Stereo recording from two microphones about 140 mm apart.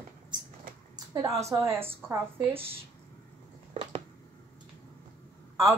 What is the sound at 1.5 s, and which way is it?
Speech, 20° right (ahead or behind).